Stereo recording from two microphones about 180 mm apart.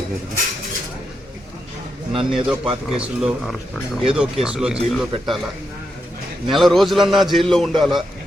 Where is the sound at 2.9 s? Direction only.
5° right (ahead or behind).